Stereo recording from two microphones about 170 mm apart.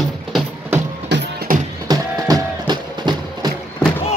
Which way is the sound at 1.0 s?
90° right.